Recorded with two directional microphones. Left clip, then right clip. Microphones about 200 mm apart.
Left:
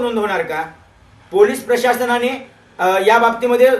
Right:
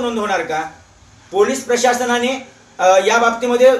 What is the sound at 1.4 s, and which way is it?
A man's voice, 15° left (ahead or behind).